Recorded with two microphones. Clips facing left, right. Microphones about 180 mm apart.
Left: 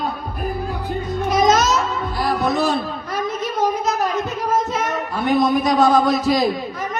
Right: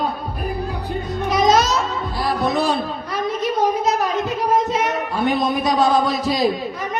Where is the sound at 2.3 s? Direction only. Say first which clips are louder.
Even; 50° left (ahead or behind).